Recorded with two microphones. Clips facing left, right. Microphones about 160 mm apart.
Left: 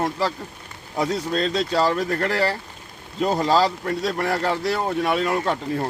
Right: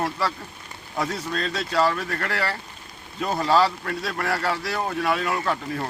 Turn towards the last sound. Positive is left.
turn(degrees=25)  # may be behind; listen again after turning